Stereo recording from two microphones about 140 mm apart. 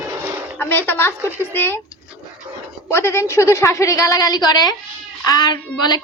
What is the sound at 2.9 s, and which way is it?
A woman's voice, 20° left (ahead or behind).